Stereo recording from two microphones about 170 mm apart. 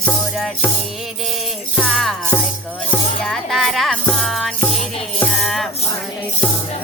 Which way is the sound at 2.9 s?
5° left (ahead or behind).